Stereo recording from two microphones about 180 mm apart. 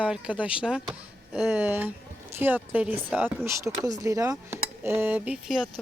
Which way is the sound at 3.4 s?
15° right (ahead or behind).